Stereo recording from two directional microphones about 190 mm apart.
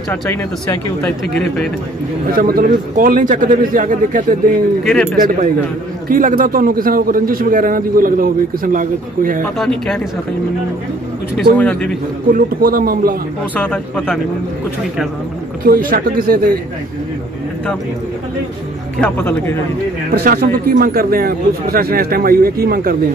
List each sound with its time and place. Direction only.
0.1 s speech: 10° left (ahead or behind)
2.3 s a man's voice: 50° right (ahead or behind)
4.8 s speech: 5° left (ahead or behind)
6.0 s a man's voice: 45° right (ahead or behind)
9.6 s speech: 5° left (ahead or behind)
11.5 s speech: 5° left (ahead or behind)
12.3 s a man's voice: 50° right (ahead or behind)
13.6 s speech: 5° left (ahead or behind)
15.6 s a man's voice: 50° right (ahead or behind)
18.9 s speech: 10° left (ahead or behind)
20.2 s a man's voice: 45° right (ahead or behind)